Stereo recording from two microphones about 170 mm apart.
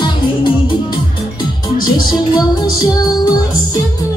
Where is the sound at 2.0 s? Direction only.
25° left (ahead or behind).